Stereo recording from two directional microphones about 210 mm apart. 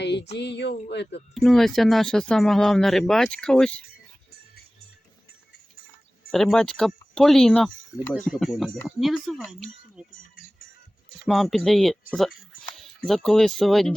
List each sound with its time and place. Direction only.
0.0 s a sound: 55° left (ahead or behind)
0.3 s speech: 55° left (ahead or behind)
1.3 s speech: centre (ahead or behind)
6.3 s speech: centre (ahead or behind)
11.3 s speech: centre (ahead or behind)